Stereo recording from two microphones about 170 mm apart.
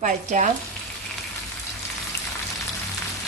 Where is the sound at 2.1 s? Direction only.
20° left (ahead or behind).